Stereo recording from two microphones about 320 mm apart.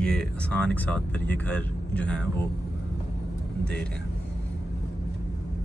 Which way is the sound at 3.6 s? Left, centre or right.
Centre.